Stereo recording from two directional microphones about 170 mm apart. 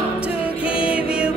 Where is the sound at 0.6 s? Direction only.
30° left (ahead or behind).